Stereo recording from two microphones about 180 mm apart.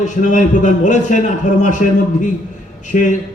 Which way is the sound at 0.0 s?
45° left (ahead or behind).